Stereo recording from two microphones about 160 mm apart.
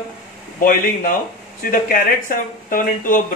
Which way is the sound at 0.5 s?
60° left (ahead or behind).